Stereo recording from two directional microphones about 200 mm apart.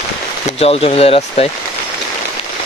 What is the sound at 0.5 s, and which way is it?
Speech, 30° left (ahead or behind).